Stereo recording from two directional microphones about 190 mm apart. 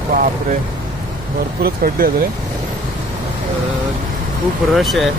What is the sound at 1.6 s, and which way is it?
Speech, 50° right (ahead or behind).